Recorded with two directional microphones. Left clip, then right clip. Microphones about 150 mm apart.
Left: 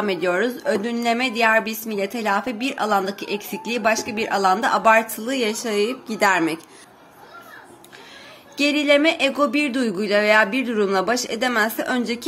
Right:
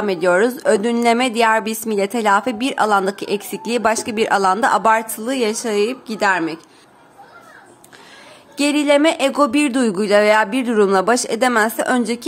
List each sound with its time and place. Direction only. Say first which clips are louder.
0.0 s a woman's voice: right 4 dB; 30° right (ahead or behind)
0.3 s a woman's voice: right 9 dB; 45° right (ahead or behind)
5.2 s a woman's voice: right 3 dB; 30° right (ahead or behind); by 6.4 s 15° right (ahead or behind)
8.5 s a woman's voice: right 2 dB; 35° right (ahead or behind)